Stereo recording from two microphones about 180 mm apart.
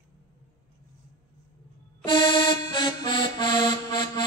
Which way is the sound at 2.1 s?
25° left (ahead or behind).